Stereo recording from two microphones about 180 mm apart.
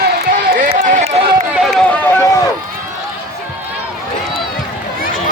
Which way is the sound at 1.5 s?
Centre (ahead or behind).